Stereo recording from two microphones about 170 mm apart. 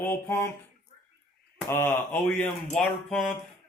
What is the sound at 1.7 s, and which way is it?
Speech, 15° left (ahead or behind).